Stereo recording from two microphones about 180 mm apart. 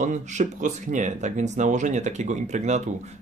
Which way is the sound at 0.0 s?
40° right (ahead or behind).